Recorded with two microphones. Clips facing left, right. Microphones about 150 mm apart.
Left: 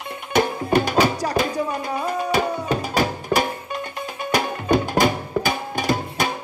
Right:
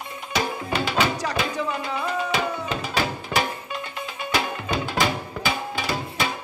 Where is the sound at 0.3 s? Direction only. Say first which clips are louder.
Left 7 dB; 50° left (ahead or behind).